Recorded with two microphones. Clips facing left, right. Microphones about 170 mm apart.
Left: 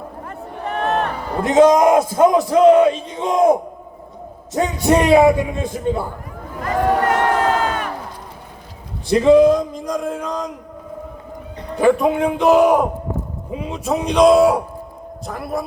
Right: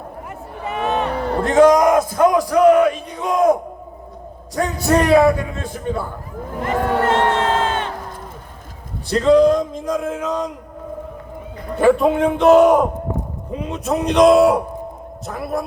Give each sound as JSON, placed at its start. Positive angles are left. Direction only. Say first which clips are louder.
{"t": 0.7, "sound": "music", "louder": "even", "side_deg": 0}
{"t": 1.5, "sound": "a man's voice", "louder": "left 1 dB", "side_deg": 20}
{"t": 6.6, "sound": "crowd", "louder": "left 1 dB", "side_deg": -25}
{"t": 9.0, "sound": "a man's voice", "louder": "left 2 dB", "side_deg": 10}
{"t": 11.8, "sound": "a man's voice", "louder": "right 1 dB", "side_deg": 0}